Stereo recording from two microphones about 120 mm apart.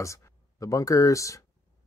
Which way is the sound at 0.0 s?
25° left (ahead or behind).